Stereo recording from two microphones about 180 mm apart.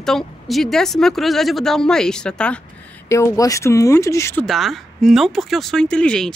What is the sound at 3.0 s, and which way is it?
Speech, 15° left (ahead or behind).